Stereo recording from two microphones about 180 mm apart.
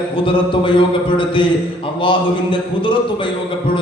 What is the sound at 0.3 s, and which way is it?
Mantra, 30° left (ahead or behind).